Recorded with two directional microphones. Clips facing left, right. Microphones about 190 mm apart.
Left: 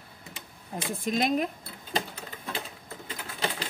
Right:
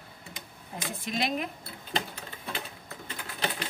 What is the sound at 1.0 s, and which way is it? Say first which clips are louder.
Speech: left 5 dB; 45° left (ahead or behind).